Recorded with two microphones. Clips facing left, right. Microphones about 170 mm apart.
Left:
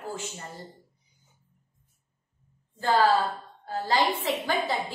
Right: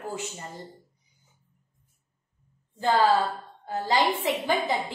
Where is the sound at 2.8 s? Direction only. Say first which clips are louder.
Right 1 dB; 20° right (ahead or behind).